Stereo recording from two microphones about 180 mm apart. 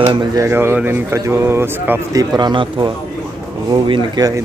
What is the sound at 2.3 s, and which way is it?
Speech, 25° right (ahead or behind).